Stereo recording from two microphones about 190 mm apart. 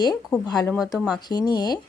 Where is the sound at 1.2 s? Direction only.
20° left (ahead or behind).